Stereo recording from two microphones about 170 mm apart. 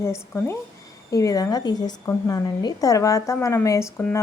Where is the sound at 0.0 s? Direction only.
15° left (ahead or behind).